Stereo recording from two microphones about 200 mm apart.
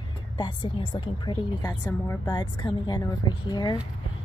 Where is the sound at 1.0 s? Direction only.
20° left (ahead or behind).